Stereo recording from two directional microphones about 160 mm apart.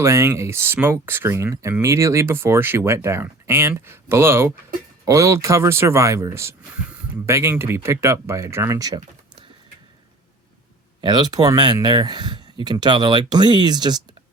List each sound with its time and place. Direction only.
0.0 s speech: 15° right (ahead or behind)
11.0 s speech: 25° right (ahead or behind)